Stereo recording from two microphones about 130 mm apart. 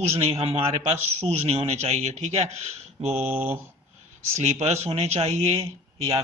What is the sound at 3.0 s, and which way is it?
Mantra, 15° right (ahead or behind).